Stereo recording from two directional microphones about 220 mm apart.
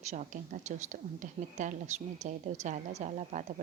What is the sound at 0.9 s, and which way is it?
A woman's voice, 35° right (ahead or behind).